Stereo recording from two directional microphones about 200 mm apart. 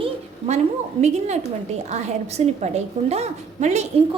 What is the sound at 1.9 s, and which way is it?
A woman's voice, 35° right (ahead or behind).